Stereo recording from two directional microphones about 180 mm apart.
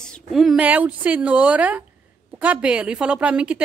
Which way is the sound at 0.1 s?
Centre (ahead or behind).